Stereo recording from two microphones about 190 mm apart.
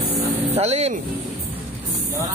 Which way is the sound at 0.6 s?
35° right (ahead or behind).